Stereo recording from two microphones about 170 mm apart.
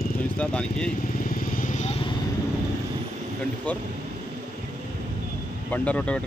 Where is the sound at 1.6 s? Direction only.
45° left (ahead or behind).